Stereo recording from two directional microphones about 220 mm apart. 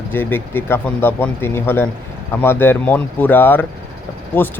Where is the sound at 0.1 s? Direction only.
10° left (ahead or behind).